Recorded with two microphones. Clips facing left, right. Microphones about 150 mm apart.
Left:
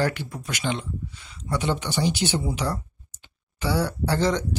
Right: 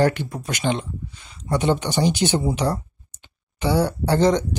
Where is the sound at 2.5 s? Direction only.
25° right (ahead or behind).